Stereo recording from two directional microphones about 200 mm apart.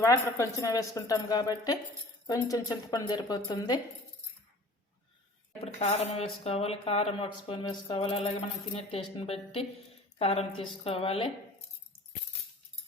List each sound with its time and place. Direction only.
0.0 s speech: 15° left (ahead or behind)
5.8 s speech: 30° left (ahead or behind)